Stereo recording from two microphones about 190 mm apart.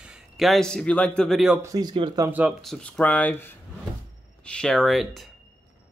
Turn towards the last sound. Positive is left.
turn(degrees=0)  # may be behind; listen again after turning